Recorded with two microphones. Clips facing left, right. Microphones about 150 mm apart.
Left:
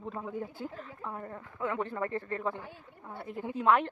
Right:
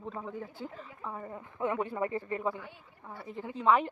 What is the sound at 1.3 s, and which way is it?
Speech, 20° right (ahead or behind).